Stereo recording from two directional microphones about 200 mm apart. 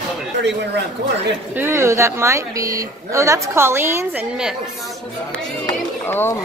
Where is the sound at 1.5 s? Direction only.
10° right (ahead or behind).